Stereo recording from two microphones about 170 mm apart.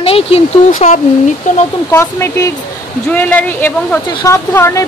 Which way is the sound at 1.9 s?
15° left (ahead or behind).